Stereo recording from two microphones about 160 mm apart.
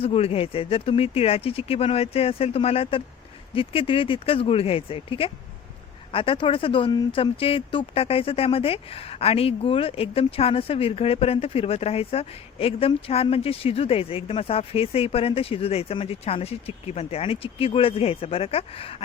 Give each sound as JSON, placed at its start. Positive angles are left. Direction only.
{"t": 0.0, "sound": "speech", "side_deg": 35}